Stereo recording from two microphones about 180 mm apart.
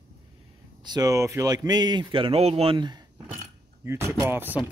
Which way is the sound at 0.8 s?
20° right (ahead or behind).